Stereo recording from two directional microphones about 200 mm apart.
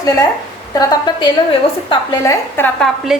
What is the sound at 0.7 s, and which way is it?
A woman's voice, 20° left (ahead or behind).